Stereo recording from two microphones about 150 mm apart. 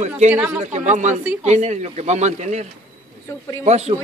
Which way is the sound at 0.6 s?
55° right (ahead or behind).